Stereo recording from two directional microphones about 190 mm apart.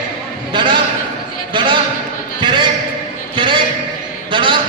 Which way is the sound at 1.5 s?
25° right (ahead or behind).